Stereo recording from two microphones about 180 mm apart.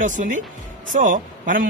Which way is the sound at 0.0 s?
45° right (ahead or behind).